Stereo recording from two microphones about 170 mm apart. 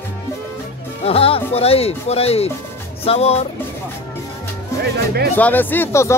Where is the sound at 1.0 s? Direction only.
35° left (ahead or behind).